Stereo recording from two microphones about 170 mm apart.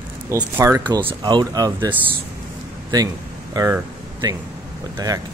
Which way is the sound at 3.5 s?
20° right (ahead or behind).